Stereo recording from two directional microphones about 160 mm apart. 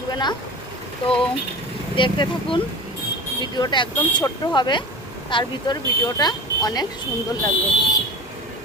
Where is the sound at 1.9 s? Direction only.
30° left (ahead or behind).